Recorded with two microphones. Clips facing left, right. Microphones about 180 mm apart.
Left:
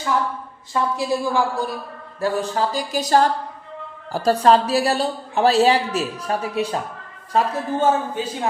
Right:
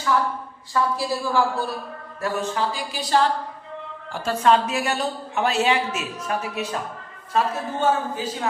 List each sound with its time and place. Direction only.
0.7 s a woman's voice: 20° left (ahead or behind)
2.2 s a woman's voice: 35° left (ahead or behind)